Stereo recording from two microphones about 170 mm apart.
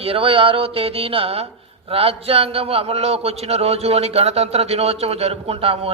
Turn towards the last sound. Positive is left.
turn(degrees=-35)  # may be behind; listen again after turning